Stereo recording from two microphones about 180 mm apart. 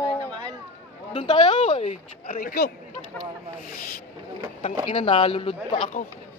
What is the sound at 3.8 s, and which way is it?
Speech, 55° left (ahead or behind).